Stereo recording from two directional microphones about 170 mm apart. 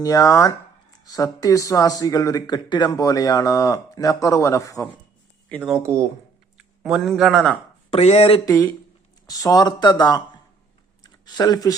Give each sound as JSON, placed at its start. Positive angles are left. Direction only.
{"t": 0.0, "sound": "speech", "side_deg": 20}
{"t": 5.5, "sound": "speech", "side_deg": 5}
{"t": 7.9, "sound": "speech", "side_deg": 35}
{"t": 8.4, "sound": "speech", "side_deg": 15}
{"t": 11.0, "sound": "a sound", "side_deg": 25}